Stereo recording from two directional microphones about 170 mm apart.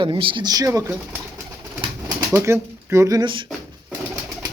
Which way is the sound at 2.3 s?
15° right (ahead or behind).